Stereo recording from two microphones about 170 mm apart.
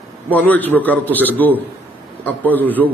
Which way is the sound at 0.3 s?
10° left (ahead or behind).